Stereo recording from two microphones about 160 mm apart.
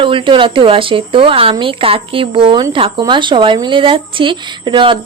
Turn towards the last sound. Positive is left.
turn(degrees=-30)  # may be behind; listen again after turning